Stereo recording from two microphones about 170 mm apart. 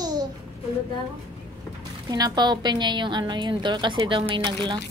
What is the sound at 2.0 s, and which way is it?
A woman's voice, 25° right (ahead or behind).